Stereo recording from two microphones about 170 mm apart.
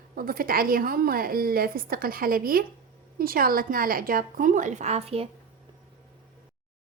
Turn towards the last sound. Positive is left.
turn(degrees=-35)  # may be behind; listen again after turning